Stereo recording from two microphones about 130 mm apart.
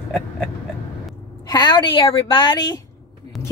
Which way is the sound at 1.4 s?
30° left (ahead or behind).